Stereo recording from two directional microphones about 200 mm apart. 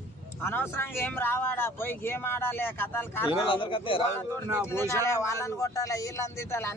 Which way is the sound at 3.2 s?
25° left (ahead or behind).